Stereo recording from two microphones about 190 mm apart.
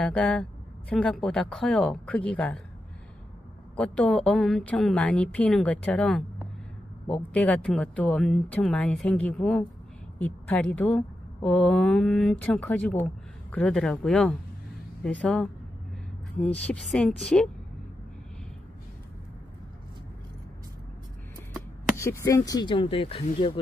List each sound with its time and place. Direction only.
0.0 s speech: 5° left (ahead or behind)
3.7 s a woman's voice: 5° left (ahead or behind)
21.9 s speech: 15° left (ahead or behind); by 23.6 s 30° left (ahead or behind)